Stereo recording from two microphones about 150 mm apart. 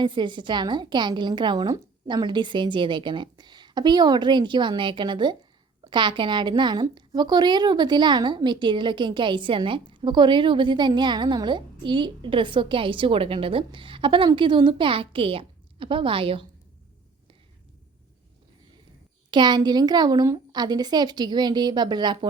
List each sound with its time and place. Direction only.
0.0 s a woman's voice: 30° right (ahead or behind)
19.3 s a woman's voice: 30° right (ahead or behind)